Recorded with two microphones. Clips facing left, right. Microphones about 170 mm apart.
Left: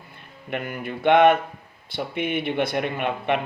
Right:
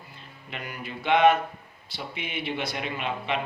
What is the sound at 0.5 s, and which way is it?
Speech, 55° left (ahead or behind).